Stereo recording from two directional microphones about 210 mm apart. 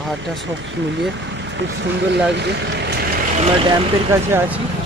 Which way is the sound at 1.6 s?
60° right (ahead or behind).